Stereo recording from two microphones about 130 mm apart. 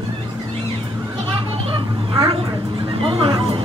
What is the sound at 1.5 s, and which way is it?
Vehicle, 45° right (ahead or behind).